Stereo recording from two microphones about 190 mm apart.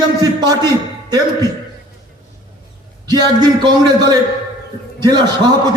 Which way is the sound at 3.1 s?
20° right (ahead or behind).